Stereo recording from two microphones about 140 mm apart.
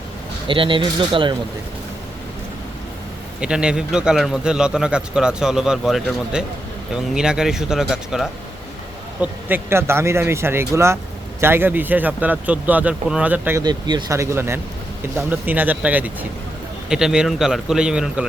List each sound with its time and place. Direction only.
0.4 s speech: 35° right (ahead or behind)
3.4 s speech: 5° right (ahead or behind)
9.2 s speech: 15° right (ahead or behind)
13.6 s speech: 30° right (ahead or behind); by 18.3 s 5° right (ahead or behind)